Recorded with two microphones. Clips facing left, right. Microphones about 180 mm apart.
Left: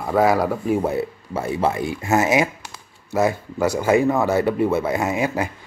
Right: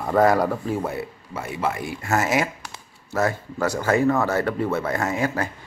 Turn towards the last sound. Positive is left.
turn(degrees=15)  # may be behind; listen again after turning